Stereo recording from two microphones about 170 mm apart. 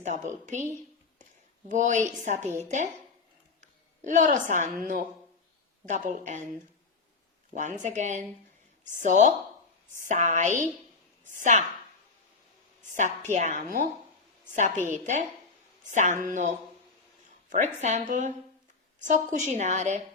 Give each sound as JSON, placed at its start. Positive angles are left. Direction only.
{"t": 0.0, "sound": "a woman's voice", "side_deg": -45}
{"t": 1.6, "sound": "a woman's voice", "side_deg": -50}
{"t": 3.6, "sound": "a woman's voice", "side_deg": -50}
{"t": 7.5, "sound": "a woman's voice", "side_deg": -45}
{"t": 12.9, "sound": "a woman's voice", "side_deg": -45}
{"t": 17.7, "sound": "a woman's voice", "side_deg": -45}